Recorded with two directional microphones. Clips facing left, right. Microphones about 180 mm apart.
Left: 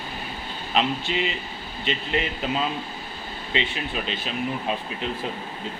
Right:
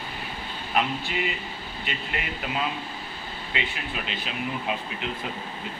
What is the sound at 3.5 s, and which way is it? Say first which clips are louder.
Speech: left 5 dB; 25° left (ahead or behind).